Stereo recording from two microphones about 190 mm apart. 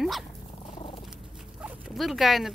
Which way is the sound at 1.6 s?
5° right (ahead or behind).